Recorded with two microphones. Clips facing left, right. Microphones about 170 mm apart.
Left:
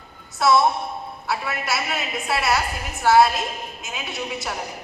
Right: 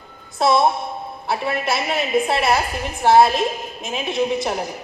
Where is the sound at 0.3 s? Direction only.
25° right (ahead or behind).